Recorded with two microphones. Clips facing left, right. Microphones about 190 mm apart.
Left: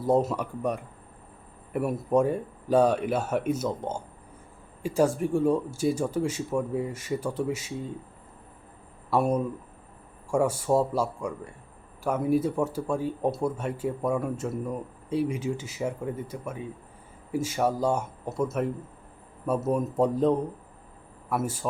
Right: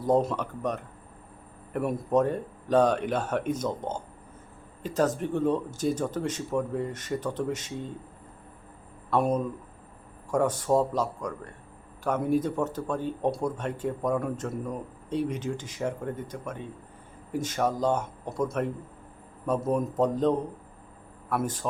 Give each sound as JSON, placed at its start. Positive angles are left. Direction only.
{"t": 0.0, "sound": "speech", "side_deg": 5}
{"t": 9.0, "sound": "a man's voice", "side_deg": 10}